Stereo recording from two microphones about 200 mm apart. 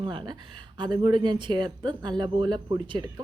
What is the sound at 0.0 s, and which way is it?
A woman's voice, 25° right (ahead or behind).